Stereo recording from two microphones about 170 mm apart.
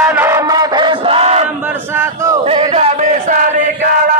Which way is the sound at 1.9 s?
15° right (ahead or behind).